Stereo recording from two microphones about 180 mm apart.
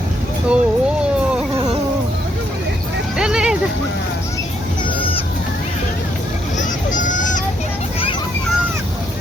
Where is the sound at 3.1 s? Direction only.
5° right (ahead or behind).